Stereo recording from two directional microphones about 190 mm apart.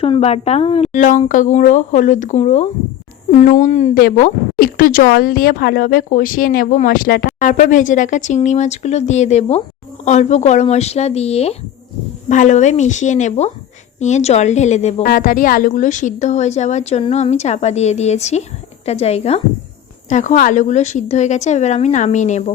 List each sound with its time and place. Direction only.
0.0 s a woman's voice: 30° left (ahead or behind)
4.0 s a woman's voice: 50° left (ahead or behind)
15.0 s a woman's voice: 45° left (ahead or behind)